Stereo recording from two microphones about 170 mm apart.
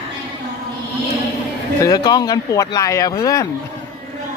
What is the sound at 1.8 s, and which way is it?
Speech, 25° left (ahead or behind).